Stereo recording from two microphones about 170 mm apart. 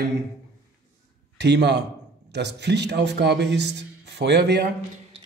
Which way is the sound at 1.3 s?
80° right.